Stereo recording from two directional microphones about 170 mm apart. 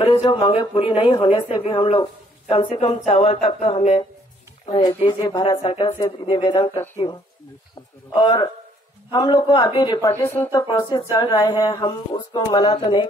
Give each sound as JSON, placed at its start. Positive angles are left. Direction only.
{"t": 0.1, "sound": "speech", "side_deg": 35}
{"t": 8.1, "sound": "speech", "side_deg": 30}
{"t": 10.1, "sound": "speech", "side_deg": 15}